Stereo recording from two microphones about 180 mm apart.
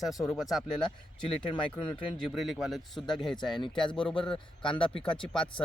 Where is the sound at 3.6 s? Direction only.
25° left (ahead or behind).